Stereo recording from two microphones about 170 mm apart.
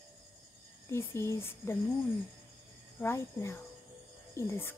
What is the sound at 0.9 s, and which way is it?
Speech, 15° left (ahead or behind).